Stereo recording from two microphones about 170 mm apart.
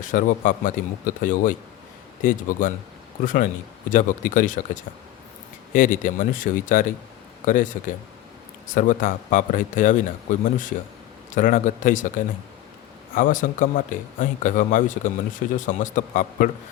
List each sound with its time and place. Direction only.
0.0 s speech: 50° left (ahead or behind)
11.3 s speech: 50° left (ahead or behind)